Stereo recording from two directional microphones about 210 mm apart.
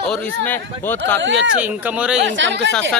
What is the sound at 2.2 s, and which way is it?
Speech, 60° right (ahead or behind).